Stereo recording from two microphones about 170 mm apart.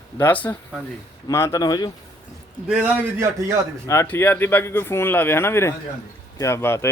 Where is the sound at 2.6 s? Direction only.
10° right (ahead or behind).